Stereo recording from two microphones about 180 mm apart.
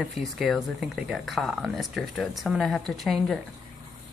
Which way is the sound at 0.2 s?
Centre (ahead or behind).